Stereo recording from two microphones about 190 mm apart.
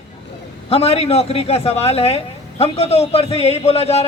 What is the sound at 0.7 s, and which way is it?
A man's voice, 30° left (ahead or behind).